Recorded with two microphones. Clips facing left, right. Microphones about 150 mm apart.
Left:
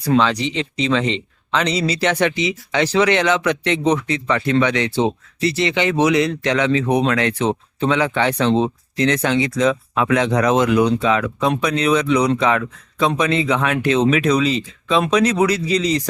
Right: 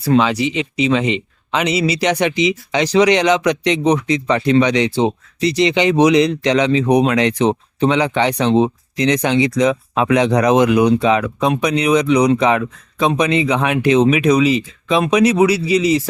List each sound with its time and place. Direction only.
0.0 s speech: 10° right (ahead or behind)